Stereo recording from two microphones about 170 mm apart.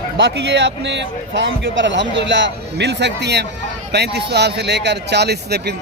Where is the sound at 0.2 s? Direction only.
90° right.